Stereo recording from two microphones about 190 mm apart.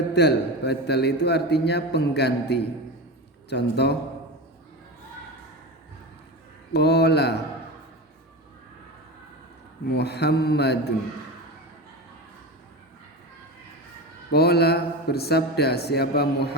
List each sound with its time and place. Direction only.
0.1 s a man's voice: 60° left (ahead or behind)
6.7 s a man's voice: 60° left (ahead or behind)
9.9 s a man's voice: 60° left (ahead or behind)
14.3 s a man's voice: 55° left (ahead or behind)